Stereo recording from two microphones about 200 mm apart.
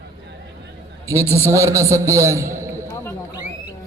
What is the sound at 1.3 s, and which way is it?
A man's voice, 15° right (ahead or behind).